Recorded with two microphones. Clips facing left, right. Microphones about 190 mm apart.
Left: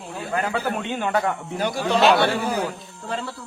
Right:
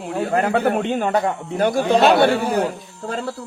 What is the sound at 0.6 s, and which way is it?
Speech, 55° right (ahead or behind).